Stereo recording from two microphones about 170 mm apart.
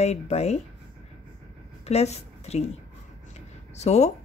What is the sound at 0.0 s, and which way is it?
Speech, 40° left (ahead or behind).